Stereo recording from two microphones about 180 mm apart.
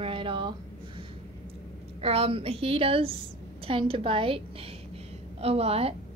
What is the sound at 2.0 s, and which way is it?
A woman's voice, 35° right (ahead or behind).